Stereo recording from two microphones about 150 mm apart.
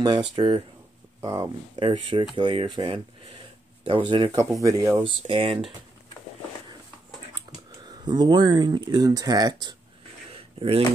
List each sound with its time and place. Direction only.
0.4 s speech: 30° right (ahead or behind)
1.2 s speech: 20° right (ahead or behind)
1.8 s speech: 35° right (ahead or behind)
4.3 s speech: 20° right (ahead or behind)
5.0 s speech: 35° right (ahead or behind)
7.9 s speech: 30° right (ahead or behind)
10.3 s a sound: 40° right (ahead or behind)